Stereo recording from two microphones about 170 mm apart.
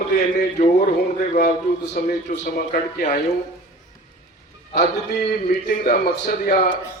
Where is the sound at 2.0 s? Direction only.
55° left (ahead or behind).